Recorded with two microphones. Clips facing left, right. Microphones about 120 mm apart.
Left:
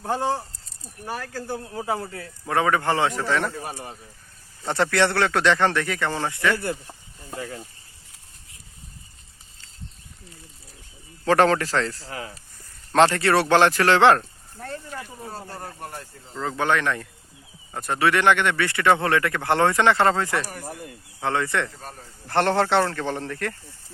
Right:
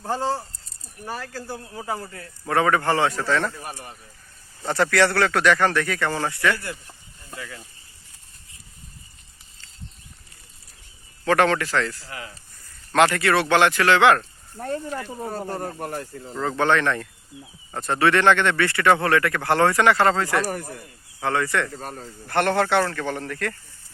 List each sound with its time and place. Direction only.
0.0 s a man's voice: 15° left (ahead or behind)
1.2 s speech: 5° right (ahead or behind)
1.8 s a man's voice: 15° left (ahead or behind)
6.8 s snake: 30° left (ahead or behind)
11.3 s speech: 35° left (ahead or behind)
15.2 s speech: 55° right (ahead or behind)
16.3 s a man's voice: centre (ahead or behind); by 21.7 s 20° left (ahead or behind)
21.7 s speech: 60° right (ahead or behind)
22.3 s speech: 25° left (ahead or behind)